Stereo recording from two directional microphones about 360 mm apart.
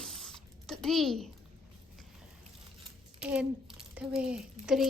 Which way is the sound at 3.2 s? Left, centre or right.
Centre.